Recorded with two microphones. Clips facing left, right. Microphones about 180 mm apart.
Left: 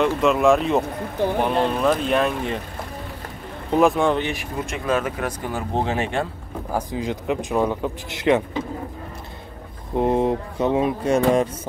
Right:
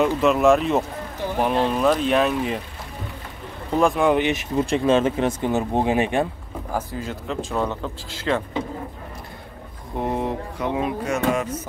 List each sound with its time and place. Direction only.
0.0 s speech: centre (ahead or behind)
3.8 s speech: centre (ahead or behind)
4.1 s speech: 20° right (ahead or behind)
6.7 s speech: 15° left (ahead or behind)
9.9 s speech: 20° left (ahead or behind)